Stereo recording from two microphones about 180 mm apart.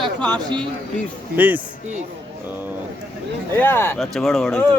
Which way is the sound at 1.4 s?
10° right (ahead or behind).